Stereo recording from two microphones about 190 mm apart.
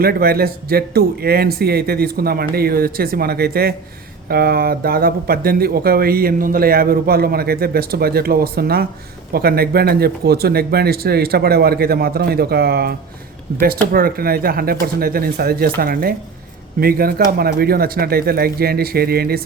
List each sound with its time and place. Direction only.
0.0 s speech: 55° right (ahead or behind)